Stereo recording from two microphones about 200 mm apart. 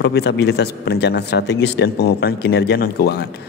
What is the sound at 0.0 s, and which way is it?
A man's voice, 55° left (ahead or behind).